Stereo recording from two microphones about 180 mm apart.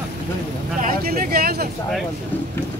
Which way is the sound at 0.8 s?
50° right (ahead or behind).